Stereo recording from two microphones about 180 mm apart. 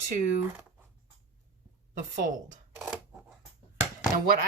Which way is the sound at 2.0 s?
45° right (ahead or behind).